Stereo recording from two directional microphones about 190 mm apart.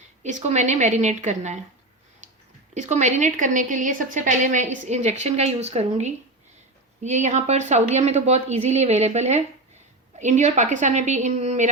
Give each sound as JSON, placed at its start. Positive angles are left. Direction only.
{"t": 0.2, "sound": "a woman's voice", "side_deg": -35}
{"t": 2.7, "sound": "a woman's voice", "side_deg": -40}